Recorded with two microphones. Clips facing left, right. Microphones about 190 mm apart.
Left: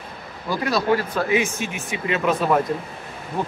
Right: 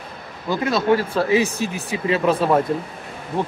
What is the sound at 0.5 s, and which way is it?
Speech, 25° right (ahead or behind).